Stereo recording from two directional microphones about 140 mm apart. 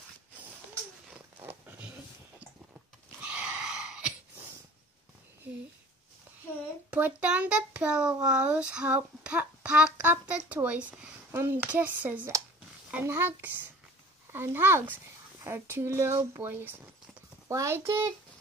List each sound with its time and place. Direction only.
1.1 s a sound: 15° right (ahead or behind)
3.2 s wheeze: 10° right (ahead or behind)
6.9 s a child's voice: 10° right (ahead or behind)